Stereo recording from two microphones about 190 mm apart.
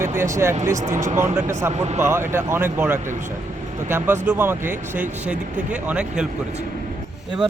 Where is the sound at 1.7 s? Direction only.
35° right (ahead or behind).